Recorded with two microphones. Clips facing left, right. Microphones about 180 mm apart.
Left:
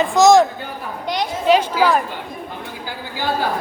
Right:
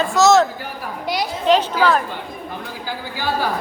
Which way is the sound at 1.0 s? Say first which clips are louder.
Even; 5° right (ahead or behind).